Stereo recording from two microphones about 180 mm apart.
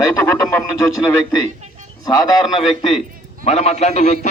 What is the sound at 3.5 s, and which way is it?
Speech, 35° left (ahead or behind).